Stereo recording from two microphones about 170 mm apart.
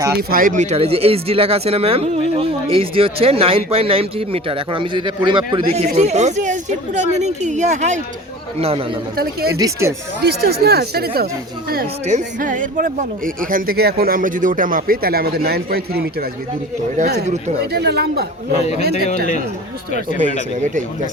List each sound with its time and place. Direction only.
0.2 s speech: 60° right (ahead or behind); by 5.4 s 30° right (ahead or behind)
5.7 s speech: 40° right (ahead or behind)
9.1 s speech: 65° right (ahead or behind)
9.6 s speech: 20° right (ahead or behind)
10.2 s speech: 70° right (ahead or behind)
12.0 s speech: 45° right (ahead or behind); by 16.0 s 65° right (ahead or behind)
17.6 s speech: 70° right (ahead or behind)
20.2 s speech: 45° right (ahead or behind)